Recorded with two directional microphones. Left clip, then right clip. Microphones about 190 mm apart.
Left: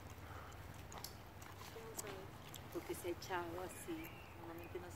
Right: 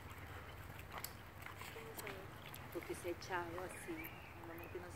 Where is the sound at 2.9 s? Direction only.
55° left (ahead or behind).